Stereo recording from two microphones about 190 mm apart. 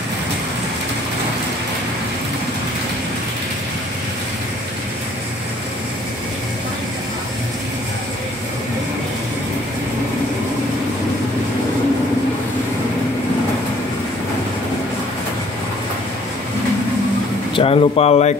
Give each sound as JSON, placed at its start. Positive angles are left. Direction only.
{"t": 17.6, "sound": "speech", "side_deg": 30}